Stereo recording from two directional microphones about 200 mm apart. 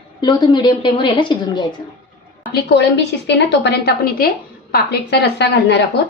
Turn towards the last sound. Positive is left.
turn(degrees=60)  # may be behind; listen again after turning